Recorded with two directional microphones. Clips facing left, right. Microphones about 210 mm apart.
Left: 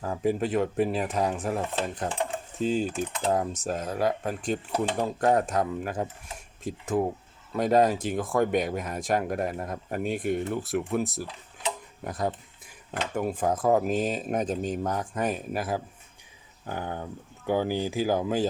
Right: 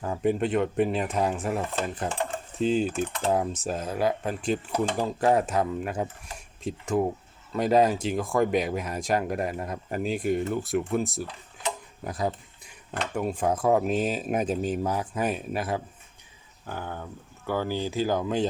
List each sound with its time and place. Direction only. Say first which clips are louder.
0.0 s speech: right 1 dB; centre (ahead or behind)
16.6 s speech: left 2 dB; 15° left (ahead or behind)